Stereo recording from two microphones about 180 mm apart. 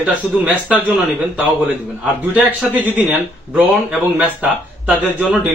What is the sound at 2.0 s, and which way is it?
A man's voice, 5° right (ahead or behind).